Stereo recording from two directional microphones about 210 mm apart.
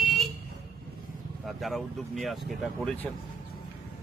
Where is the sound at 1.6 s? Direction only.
Centre (ahead or behind).